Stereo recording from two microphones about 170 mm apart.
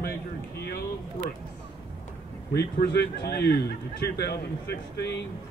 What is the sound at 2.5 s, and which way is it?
A man's voice, 70° left (ahead or behind).